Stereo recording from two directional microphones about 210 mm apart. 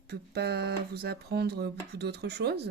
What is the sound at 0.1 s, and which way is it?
Speech, 50° right (ahead or behind).